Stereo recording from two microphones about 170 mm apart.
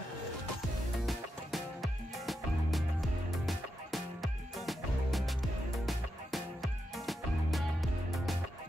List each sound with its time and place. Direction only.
1.0 s music: centre (ahead or behind)